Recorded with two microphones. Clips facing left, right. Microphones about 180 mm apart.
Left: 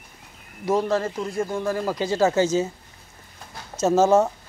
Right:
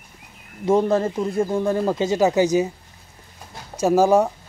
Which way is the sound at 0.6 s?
25° right (ahead or behind).